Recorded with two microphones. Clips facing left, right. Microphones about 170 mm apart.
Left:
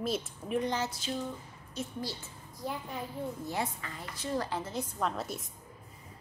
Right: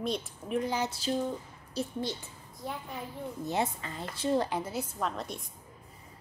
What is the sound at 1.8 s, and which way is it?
Speech, 35° right (ahead or behind).